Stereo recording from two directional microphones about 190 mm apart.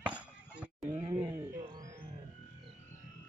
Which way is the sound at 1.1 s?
15° right (ahead or behind).